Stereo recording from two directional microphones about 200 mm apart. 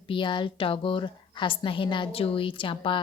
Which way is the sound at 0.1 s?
25° left (ahead or behind).